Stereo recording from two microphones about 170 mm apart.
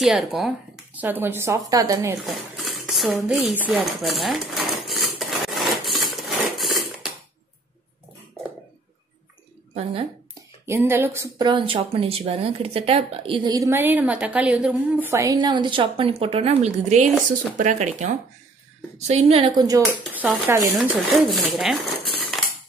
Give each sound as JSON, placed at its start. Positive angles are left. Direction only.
{"t": 0.0, "sound": "speech", "side_deg": 0}
{"t": 2.2, "sound": "a sound", "side_deg": 0}
{"t": 3.1, "sound": "speech", "side_deg": 0}
{"t": 3.5, "sound": "dishes", "side_deg": -5}
{"t": 10.6, "sound": "a woman's voice", "side_deg": -15}
{"t": 19.8, "sound": "speech", "side_deg": 5}